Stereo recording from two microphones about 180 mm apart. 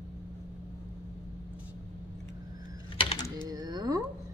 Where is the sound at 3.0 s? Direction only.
25° left (ahead or behind).